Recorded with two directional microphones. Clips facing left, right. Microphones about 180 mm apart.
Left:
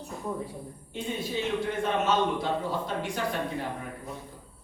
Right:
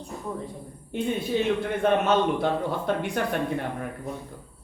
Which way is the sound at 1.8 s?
60° right (ahead or behind).